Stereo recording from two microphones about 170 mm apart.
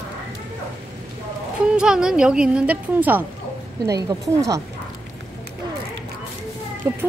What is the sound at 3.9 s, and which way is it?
Speech, 20° right (ahead or behind).